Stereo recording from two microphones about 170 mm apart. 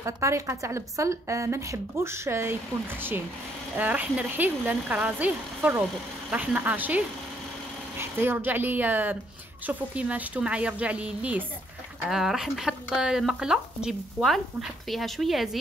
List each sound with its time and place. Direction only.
0.0 s a woman's voice: 15° right (ahead or behind)
8.0 s a woman's voice: 15° right (ahead or behind)